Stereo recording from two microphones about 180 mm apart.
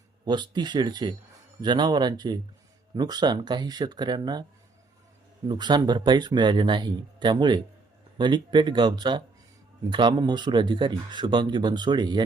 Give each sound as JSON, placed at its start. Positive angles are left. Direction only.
{"t": 0.3, "sound": "speech", "side_deg": -25}
{"t": 5.5, "sound": "speech", "side_deg": -25}